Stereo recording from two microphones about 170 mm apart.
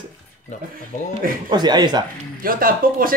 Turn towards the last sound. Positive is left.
turn(degrees=-55)  # may be behind; listen again after turning